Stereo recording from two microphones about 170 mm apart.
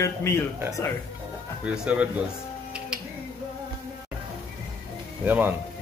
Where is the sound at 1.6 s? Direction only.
5° right (ahead or behind).